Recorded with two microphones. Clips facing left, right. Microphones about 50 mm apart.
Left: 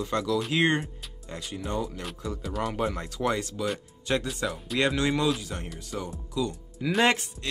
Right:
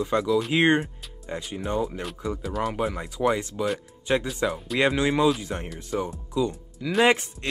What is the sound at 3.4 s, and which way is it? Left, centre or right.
Speech, right.